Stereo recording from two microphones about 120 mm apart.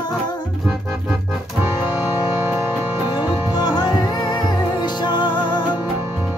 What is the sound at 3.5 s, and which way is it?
Music, 35° left (ahead or behind).